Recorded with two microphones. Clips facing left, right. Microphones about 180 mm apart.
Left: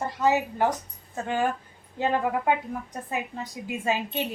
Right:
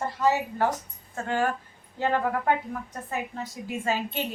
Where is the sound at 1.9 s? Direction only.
15° left (ahead or behind).